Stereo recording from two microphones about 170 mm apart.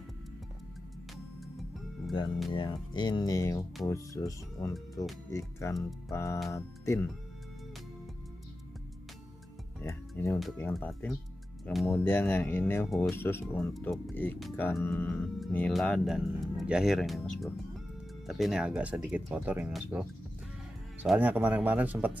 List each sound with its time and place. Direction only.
1.1 s music: centre (ahead or behind)
2.5 s speech: 25° left (ahead or behind)
9.8 s speech: 15° left (ahead or behind); by 11.9 s centre (ahead or behind)
11.9 s speech: 10° left (ahead or behind)
13.7 s speech: centre (ahead or behind)
14.1 s speech: 10° left (ahead or behind); by 22.2 s 10° right (ahead or behind)